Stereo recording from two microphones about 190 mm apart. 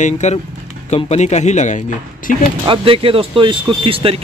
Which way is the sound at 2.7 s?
30° right (ahead or behind).